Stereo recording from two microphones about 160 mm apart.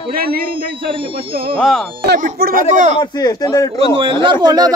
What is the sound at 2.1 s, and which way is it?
Speech, 75° right (ahead or behind).